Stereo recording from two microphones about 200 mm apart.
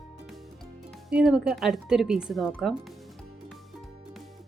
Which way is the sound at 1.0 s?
5° right (ahead or behind).